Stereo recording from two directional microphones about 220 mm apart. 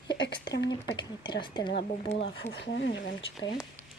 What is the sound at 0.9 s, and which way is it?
A woman's voice, 20° left (ahead or behind).